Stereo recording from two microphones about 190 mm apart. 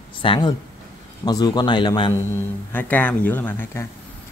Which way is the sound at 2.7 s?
10° left (ahead or behind).